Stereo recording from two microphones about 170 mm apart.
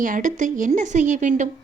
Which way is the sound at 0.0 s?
50° right (ahead or behind).